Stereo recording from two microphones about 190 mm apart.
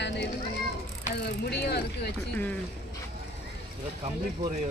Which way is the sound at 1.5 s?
60° left (ahead or behind).